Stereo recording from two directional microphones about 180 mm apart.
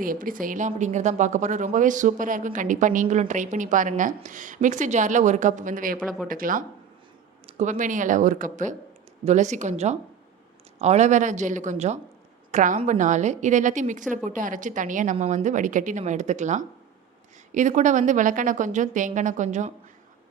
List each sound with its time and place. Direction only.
0.0 s speech: 50° right (ahead or behind)